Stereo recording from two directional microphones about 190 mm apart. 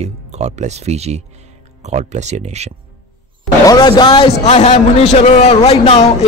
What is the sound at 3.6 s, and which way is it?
A man's voice, 20° left (ahead or behind).